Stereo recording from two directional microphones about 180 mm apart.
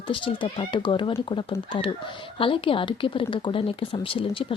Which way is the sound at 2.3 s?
30° left (ahead or behind).